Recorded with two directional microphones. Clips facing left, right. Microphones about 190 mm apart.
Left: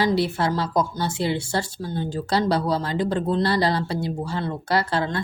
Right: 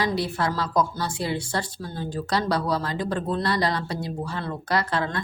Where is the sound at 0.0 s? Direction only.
30° left (ahead or behind).